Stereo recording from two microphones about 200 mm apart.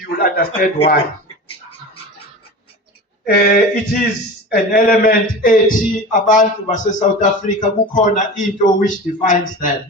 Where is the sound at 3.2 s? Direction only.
50° left (ahead or behind).